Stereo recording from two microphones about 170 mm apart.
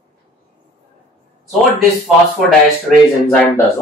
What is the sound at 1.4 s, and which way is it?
Speech, centre (ahead or behind).